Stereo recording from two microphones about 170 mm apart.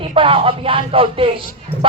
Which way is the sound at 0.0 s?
30° right (ahead or behind).